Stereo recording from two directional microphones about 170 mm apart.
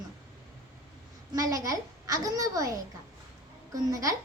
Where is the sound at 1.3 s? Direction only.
20° right (ahead or behind).